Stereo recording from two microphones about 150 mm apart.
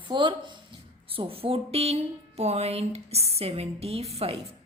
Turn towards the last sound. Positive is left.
turn(degrees=-45)  # may be behind; listen again after turning